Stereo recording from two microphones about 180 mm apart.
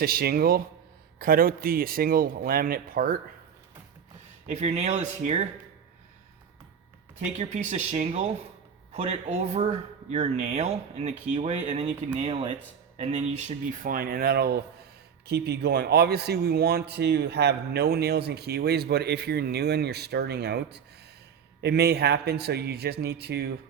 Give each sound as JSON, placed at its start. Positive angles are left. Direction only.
{"t": 0.0, "sound": "speech", "side_deg": -55}
{"t": 4.4, "sound": "speech", "side_deg": -40}
{"t": 7.2, "sound": "speech", "side_deg": -40}